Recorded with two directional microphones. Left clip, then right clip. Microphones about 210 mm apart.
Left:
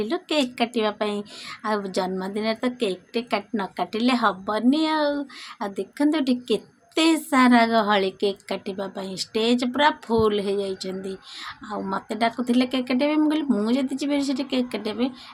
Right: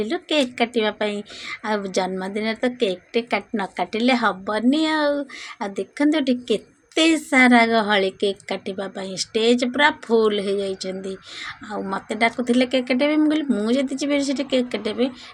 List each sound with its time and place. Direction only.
0.0 s a woman's voice: centre (ahead or behind)